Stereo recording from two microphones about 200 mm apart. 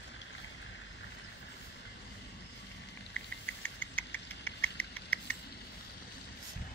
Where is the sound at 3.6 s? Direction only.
10° left (ahead or behind).